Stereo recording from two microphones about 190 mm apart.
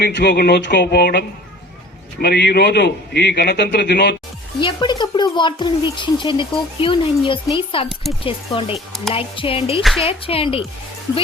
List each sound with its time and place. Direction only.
0.0 s a man's voice: 60° left (ahead or behind)
4.6 s speech: 25° left (ahead or behind)
9.8 s speech: centre (ahead or behind)
10.1 s speech: 30° left (ahead or behind)